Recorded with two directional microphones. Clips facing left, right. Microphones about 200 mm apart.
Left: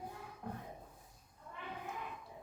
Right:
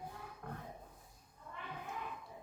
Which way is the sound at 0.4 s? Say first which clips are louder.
Left 3 dB; 20° left (ahead or behind).